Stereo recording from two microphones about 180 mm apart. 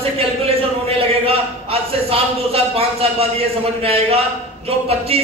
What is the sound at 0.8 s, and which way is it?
A man's voice, 30° right (ahead or behind).